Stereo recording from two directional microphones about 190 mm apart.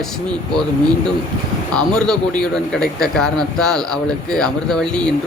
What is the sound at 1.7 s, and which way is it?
Speech, 5° left (ahead or behind).